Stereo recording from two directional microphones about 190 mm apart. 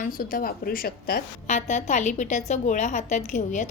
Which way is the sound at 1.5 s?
35° left (ahead or behind).